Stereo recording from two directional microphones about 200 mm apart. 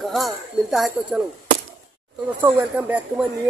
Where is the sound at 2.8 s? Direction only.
5° right (ahead or behind).